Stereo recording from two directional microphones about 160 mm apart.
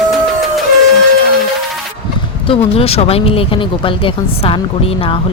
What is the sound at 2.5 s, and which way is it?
Speech, 40° left (ahead or behind).